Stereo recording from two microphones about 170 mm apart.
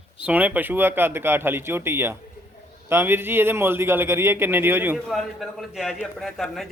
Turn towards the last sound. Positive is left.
turn(degrees=0)  # may be behind; listen again after turning